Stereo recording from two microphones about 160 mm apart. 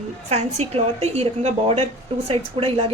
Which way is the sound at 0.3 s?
45° right (ahead or behind).